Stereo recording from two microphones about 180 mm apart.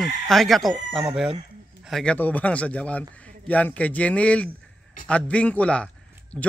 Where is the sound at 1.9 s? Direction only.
5° left (ahead or behind).